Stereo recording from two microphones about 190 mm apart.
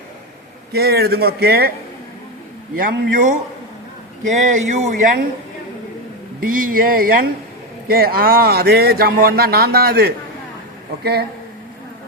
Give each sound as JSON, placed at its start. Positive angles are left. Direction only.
{"t": 0.7, "sound": "a man's voice", "side_deg": -55}
{"t": 2.7, "sound": "speech", "side_deg": -45}
{"t": 6.4, "sound": "speech", "side_deg": -45}